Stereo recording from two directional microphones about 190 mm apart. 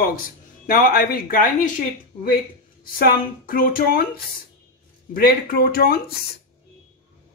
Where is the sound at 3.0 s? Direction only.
50° left (ahead or behind).